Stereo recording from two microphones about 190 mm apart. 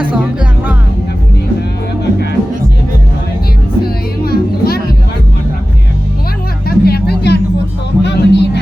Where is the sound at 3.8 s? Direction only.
55° left (ahead or behind).